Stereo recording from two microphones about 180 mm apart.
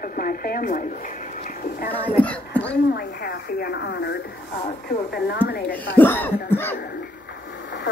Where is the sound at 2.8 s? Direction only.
60° left (ahead or behind).